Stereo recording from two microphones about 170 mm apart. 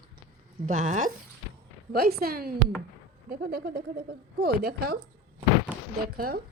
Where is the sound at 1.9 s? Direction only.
65° right (ahead or behind).